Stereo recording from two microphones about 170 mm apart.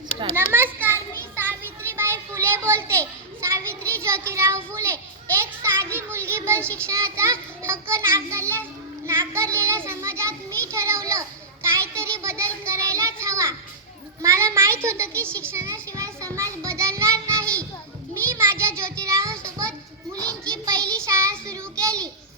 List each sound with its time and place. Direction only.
0.3 s a sound: 15° right (ahead or behind)
6.8 s child singing: 15° right (ahead or behind)
9.8 s children playing: 15° right (ahead or behind)
11.8 s child singing: 15° right (ahead or behind)
17.4 s child singing: 5° left (ahead or behind)
18.8 s child singing: 15° right (ahead or behind)
19.4 s a sound: 20° right (ahead or behind)
20.1 s children playing: 5° left (ahead or behind)
20.5 s child singing: 20° right (ahead or behind)